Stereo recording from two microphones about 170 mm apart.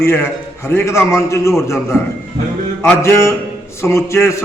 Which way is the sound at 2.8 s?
15° left (ahead or behind).